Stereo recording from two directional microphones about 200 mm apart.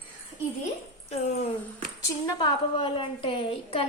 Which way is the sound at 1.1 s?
30° left (ahead or behind).